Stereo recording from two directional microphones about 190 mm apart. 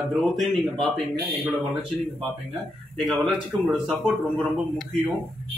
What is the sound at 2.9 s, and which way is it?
Speech, centre (ahead or behind).